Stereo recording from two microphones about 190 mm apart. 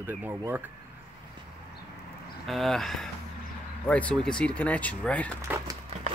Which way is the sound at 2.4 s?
Centre (ahead or behind).